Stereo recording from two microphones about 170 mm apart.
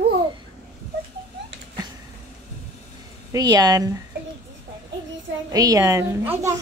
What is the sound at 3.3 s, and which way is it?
Speech, 20° right (ahead or behind).